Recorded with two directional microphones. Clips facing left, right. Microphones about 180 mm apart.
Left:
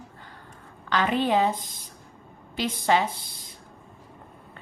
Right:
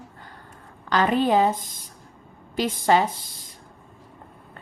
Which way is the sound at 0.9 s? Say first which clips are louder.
Right 3 dB; 40° right (ahead or behind).